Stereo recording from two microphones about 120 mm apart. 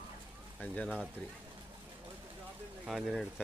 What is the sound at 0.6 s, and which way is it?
Speech, 10° left (ahead or behind).